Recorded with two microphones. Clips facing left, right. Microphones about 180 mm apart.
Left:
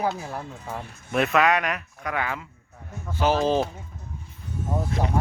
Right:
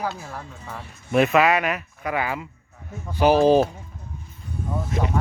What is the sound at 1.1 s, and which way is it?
Speech, 5° right (ahead or behind).